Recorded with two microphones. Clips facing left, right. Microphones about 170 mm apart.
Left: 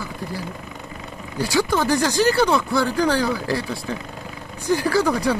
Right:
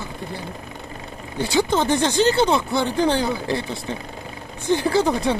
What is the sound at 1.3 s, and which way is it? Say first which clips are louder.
Speech: right 1 dB; 25° right (ahead or behind).